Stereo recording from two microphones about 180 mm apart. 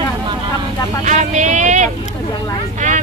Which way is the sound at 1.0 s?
45° right (ahead or behind).